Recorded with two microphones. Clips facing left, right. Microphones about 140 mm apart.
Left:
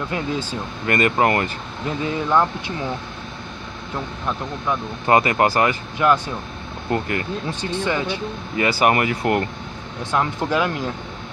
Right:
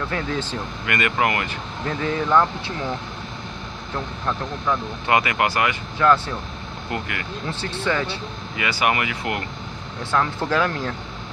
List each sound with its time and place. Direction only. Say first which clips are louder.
0.1 s speech: left 1 dB; 15° left (ahead or behind)
0.8 s speech: left 4 dB; 35° left (ahead or behind)
1.9 s speech: even; 15° left (ahead or behind)
3.9 s speech: even; 15° left (ahead or behind)
5.0 s speech: left 4 dB; 35° left (ahead or behind)
5.9 s speech: right 1 dB; 15° left (ahead or behind)
6.9 s speech: left 6 dB; 35° left (ahead or behind)
7.4 s speech: right 3 dB; 15° left (ahead or behind)
8.5 s speech: left 5 dB; 40° left (ahead or behind)
10.1 s speech: left 1 dB; 15° left (ahead or behind)